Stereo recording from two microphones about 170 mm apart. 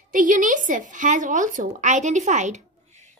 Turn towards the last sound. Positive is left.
turn(degrees=-45)  # may be behind; listen again after turning